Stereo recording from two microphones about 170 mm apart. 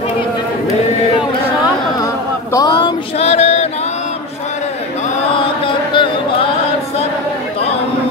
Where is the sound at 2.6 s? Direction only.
30° left (ahead or behind).